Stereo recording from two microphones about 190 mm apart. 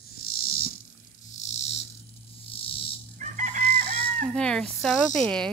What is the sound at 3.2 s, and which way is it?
Chicken, 40° right (ahead or behind).